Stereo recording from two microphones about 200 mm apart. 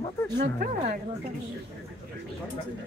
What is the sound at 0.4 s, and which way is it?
Speech, 45° right (ahead or behind).